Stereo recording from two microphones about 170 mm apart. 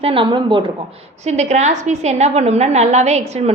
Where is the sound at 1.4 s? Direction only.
40° right (ahead or behind).